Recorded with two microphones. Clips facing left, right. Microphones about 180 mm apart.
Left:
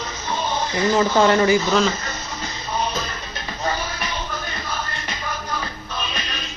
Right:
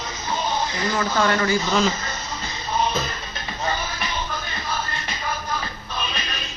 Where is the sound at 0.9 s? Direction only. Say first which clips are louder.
Left 5 dB; 25° left (ahead or behind).